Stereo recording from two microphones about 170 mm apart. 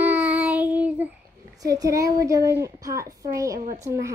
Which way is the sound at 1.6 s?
20° right (ahead or behind).